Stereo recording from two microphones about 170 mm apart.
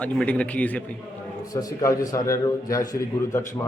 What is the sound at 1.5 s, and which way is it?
A man's voice, 20° left (ahead or behind).